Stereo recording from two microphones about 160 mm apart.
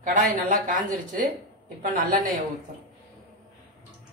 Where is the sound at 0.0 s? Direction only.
55° right (ahead or behind).